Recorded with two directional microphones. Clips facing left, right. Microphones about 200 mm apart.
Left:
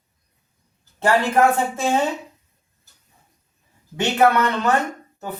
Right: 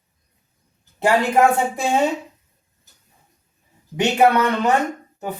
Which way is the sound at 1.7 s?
15° right (ahead or behind).